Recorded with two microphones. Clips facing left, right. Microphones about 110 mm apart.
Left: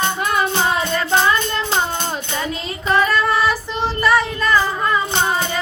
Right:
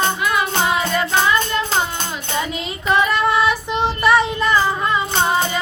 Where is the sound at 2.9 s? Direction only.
20° right (ahead or behind).